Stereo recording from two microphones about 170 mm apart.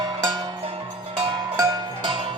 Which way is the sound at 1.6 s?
25° right (ahead or behind).